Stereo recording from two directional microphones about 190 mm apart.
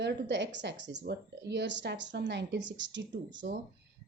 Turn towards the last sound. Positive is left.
turn(degrees=-70)  # may be behind; listen again after turning